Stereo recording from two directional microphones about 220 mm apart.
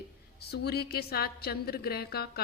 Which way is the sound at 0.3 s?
45° left (ahead or behind).